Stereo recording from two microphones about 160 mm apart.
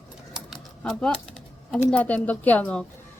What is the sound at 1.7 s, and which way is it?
A woman's voice, 10° left (ahead or behind).